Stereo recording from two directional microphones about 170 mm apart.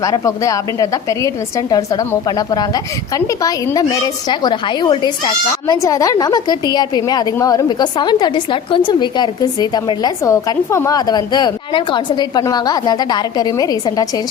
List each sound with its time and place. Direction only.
0.0 s a woman's voice: 20° left (ahead or behind)